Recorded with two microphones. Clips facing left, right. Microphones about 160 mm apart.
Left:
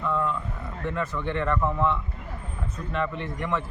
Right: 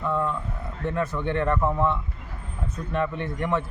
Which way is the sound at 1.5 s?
15° right (ahead or behind).